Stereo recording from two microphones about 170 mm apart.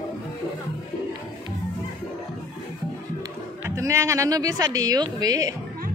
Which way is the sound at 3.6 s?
15° right (ahead or behind).